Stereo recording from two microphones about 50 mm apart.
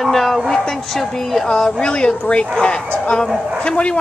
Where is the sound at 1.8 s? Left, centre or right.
Left.